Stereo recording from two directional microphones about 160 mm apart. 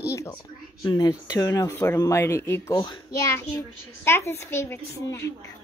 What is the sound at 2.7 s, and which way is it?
Speech, 30° left (ahead or behind).